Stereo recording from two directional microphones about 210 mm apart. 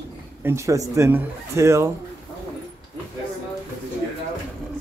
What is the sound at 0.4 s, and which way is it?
Speech, 10° right (ahead or behind).